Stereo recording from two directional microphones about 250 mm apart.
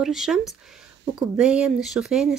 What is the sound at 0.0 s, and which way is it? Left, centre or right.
Speech, centre.